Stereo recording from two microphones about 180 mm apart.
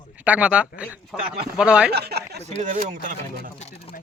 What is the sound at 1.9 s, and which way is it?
Speech, 65° right (ahead or behind).